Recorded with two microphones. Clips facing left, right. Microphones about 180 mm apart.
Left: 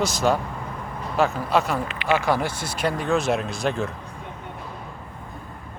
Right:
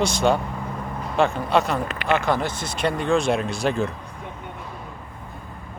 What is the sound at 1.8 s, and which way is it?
Speech, 40° right (ahead or behind).